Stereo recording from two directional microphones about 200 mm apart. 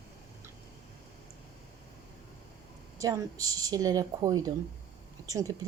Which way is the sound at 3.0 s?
15° right (ahead or behind).